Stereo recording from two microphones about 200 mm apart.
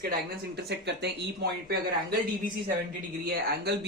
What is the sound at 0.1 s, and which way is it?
Speech, 55° right (ahead or behind).